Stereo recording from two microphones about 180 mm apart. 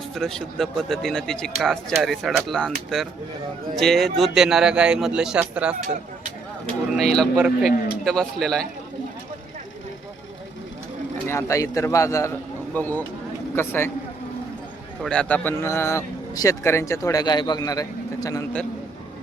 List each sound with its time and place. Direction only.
0.1 s speech: 5° left (ahead or behind)
6.9 s speech: centre (ahead or behind)
11.3 s a man's voice: 15° left (ahead or behind)
15.0 s a man's voice: 5° left (ahead or behind)